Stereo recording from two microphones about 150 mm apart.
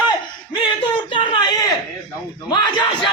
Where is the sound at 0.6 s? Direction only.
30° left (ahead or behind).